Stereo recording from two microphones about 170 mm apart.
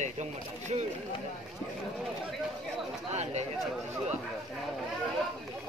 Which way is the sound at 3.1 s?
40° right (ahead or behind).